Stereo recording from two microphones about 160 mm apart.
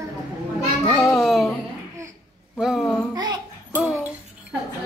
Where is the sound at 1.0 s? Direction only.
Centre (ahead or behind).